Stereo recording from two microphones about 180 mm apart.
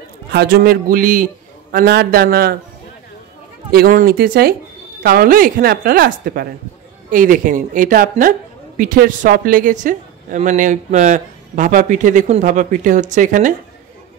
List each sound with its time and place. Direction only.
0.3 s a man's voice: 60° right (ahead or behind)
3.7 s a man's voice: 55° right (ahead or behind)